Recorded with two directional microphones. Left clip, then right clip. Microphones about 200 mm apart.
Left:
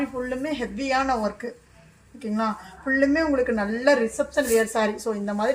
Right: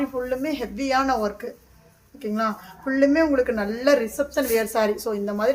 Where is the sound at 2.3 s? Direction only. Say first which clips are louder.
Right 1 dB; 20° right (ahead or behind).